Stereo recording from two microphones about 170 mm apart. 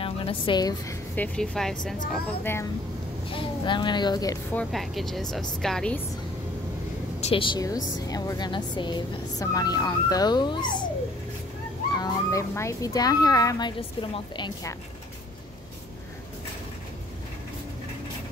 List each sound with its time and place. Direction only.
0.0 s a woman's voice: 30° left (ahead or behind)
1.1 s speech: 5° left (ahead or behind)
3.3 s speech: 30° left (ahead or behind)
4.5 s speech: 5° left (ahead or behind)
7.2 s speech: 35° left (ahead or behind)
11.9 s speech: 20° left (ahead or behind)